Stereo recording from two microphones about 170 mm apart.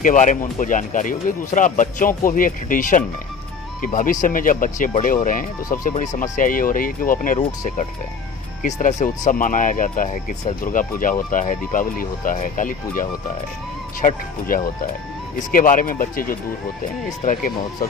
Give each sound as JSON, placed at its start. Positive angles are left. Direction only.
{"t": 0.0, "sound": "speech", "side_deg": 50}
{"t": 8.6, "sound": "speech", "side_deg": 45}